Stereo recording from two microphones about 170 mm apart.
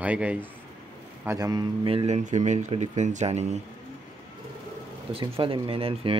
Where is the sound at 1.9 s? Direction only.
35° right (ahead or behind).